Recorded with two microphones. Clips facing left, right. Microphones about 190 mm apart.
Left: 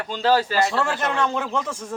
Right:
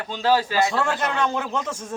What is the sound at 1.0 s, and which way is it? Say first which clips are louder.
Speech: left 1 dB; 15° right (ahead or behind).